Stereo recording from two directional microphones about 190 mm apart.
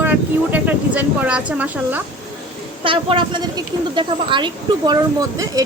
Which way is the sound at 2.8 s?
30° right (ahead or behind).